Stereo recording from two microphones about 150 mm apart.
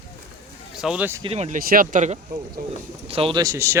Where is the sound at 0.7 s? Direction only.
5° right (ahead or behind).